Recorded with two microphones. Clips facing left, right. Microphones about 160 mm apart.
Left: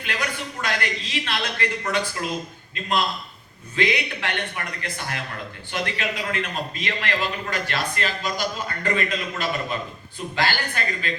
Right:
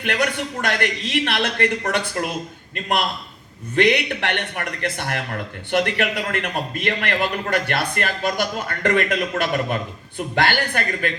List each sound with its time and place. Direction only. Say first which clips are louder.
0.0 s a man's voice: right 7 dB; 60° right (ahead or behind)
3.8 s a man's voice: right 6 dB; 60° right (ahead or behind)